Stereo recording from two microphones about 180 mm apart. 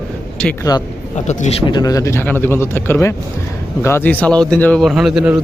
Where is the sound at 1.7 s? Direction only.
20° left (ahead or behind).